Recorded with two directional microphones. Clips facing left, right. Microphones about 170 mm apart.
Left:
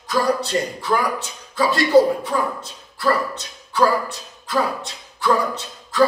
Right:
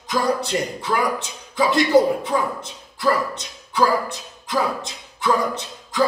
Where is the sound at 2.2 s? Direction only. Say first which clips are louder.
Even; 20° right (ahead or behind).